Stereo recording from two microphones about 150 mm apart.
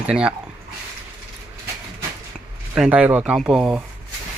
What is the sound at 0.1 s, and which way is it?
Speech, 5° right (ahead or behind).